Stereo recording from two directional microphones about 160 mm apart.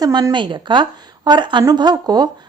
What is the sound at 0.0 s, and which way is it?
A woman's voice, 25° right (ahead or behind).